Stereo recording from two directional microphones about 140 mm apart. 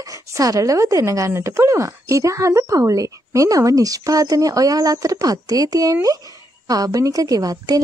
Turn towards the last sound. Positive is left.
turn(degrees=-25)  # may be behind; listen again after turning